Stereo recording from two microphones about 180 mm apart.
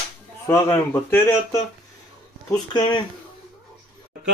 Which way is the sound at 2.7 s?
25° left (ahead or behind).